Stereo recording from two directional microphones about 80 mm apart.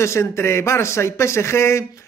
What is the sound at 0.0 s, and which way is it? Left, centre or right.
Speech, left.